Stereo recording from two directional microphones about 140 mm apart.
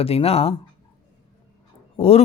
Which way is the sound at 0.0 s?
45° left (ahead or behind).